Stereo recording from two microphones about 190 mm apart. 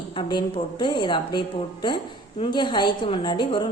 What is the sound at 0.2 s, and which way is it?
A woman's voice, 25° left (ahead or behind).